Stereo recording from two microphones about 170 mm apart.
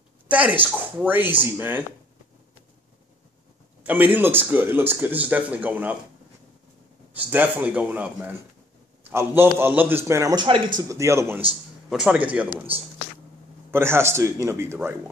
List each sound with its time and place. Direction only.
0.3 s speech: 10° right (ahead or behind)
3.8 s speech: 10° right (ahead or behind)
7.2 s speech: 10° right (ahead or behind)